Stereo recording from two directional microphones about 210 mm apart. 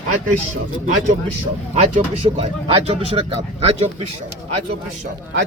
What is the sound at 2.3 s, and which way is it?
Speech, 30° right (ahead or behind).